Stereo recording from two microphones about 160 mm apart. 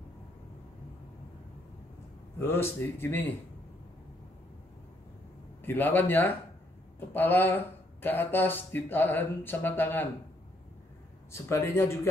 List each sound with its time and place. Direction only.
2.3 s speech: 15° left (ahead or behind)
5.6 s speech: 10° left (ahead or behind)
11.3 s speech: 15° left (ahead or behind)